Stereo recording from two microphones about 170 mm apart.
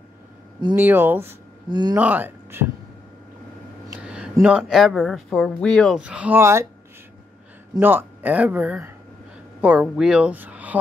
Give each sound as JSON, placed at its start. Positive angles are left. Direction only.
{"t": 0.7, "sound": "speech", "side_deg": -10}
{"t": 1.7, "sound": "speech", "side_deg": -25}
{"t": 2.0, "sound": "speech", "side_deg": -10}
{"t": 3.9, "sound": "speech", "side_deg": -5}
{"t": 7.8, "sound": "speech", "side_deg": -10}